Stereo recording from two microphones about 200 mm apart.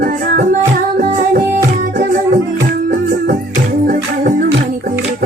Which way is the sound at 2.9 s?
45° right (ahead or behind).